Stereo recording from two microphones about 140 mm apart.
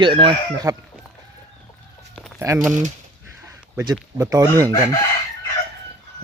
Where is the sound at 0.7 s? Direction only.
20° right (ahead or behind).